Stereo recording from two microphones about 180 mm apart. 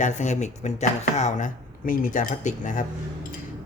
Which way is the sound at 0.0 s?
40° left (ahead or behind).